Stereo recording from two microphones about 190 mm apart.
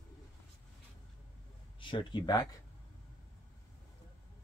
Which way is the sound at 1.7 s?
25° left (ahead or behind).